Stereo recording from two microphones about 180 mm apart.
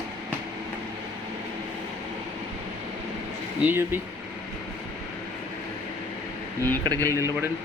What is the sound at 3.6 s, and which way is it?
Speech, 10° right (ahead or behind).